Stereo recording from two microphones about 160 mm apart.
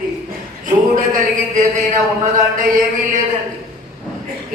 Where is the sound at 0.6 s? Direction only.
55° right (ahead or behind).